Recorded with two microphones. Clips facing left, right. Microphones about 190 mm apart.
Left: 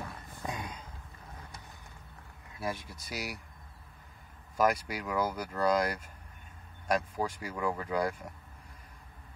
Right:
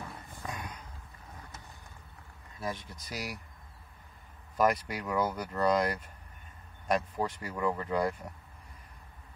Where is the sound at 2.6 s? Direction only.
10° left (ahead or behind).